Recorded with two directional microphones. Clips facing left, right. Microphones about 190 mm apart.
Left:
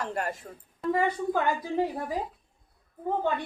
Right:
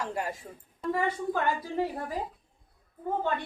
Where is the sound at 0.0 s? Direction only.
10° right (ahead or behind).